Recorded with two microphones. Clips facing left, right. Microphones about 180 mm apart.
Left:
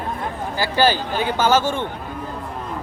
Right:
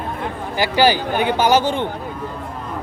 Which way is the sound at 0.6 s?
15° right (ahead or behind).